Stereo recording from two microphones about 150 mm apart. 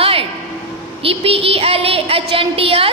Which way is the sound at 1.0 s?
40° right (ahead or behind).